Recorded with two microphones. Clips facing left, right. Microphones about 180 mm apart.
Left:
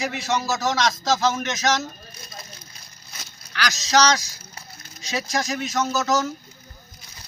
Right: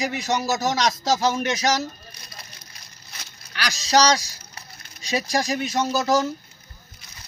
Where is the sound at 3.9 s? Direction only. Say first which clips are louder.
Right 1 dB; 35° right (ahead or behind).